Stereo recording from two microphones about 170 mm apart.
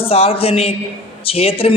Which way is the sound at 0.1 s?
35° left (ahead or behind).